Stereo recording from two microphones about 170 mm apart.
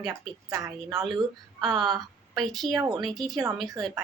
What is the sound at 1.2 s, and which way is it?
Speech, 25° right (ahead or behind).